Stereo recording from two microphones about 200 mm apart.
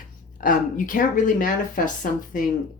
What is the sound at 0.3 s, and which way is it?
Speech, 45° left (ahead or behind).